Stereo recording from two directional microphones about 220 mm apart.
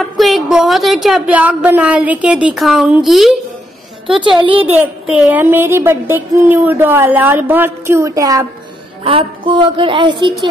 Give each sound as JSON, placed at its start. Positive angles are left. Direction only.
{"t": 0.0, "sound": "speech", "side_deg": 0}
{"t": 4.4, "sound": "a woman's voice", "side_deg": -25}
{"t": 4.6, "sound": "a sound", "side_deg": -5}
{"t": 9.0, "sound": "a woman's voice", "side_deg": -25}